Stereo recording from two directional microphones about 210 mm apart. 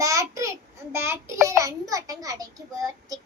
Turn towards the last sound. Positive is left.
turn(degrees=-15)  # may be behind; listen again after turning